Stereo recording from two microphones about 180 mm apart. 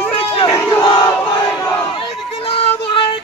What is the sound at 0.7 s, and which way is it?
Crowd, 25° left (ahead or behind).